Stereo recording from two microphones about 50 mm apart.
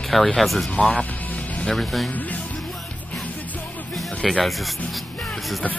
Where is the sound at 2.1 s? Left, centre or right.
Left.